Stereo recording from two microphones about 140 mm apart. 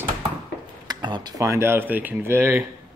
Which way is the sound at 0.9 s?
30° right (ahead or behind).